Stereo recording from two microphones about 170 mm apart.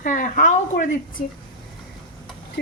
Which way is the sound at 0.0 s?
50° left (ahead or behind).